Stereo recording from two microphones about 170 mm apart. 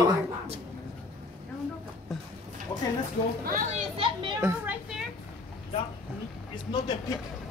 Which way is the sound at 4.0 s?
30° right (ahead or behind).